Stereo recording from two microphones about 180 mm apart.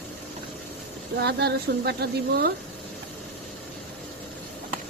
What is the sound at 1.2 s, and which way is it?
Speech, 65° right (ahead or behind).